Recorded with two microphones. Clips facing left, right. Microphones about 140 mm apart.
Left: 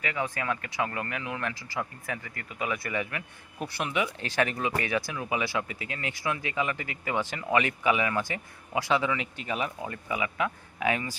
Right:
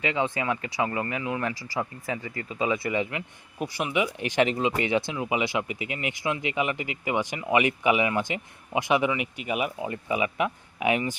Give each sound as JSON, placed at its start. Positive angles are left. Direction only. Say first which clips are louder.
{"t": 0.0, "sound": "speech", "louder": "right 5 dB", "side_deg": -20}